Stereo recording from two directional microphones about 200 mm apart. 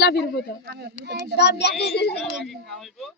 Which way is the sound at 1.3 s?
55° left (ahead or behind).